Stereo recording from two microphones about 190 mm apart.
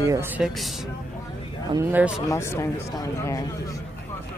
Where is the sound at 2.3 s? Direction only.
15° left (ahead or behind).